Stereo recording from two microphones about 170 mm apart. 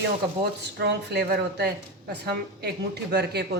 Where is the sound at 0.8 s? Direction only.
75° right (ahead or behind).